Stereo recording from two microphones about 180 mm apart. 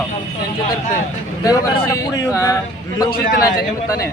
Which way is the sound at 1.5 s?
20° left (ahead or behind).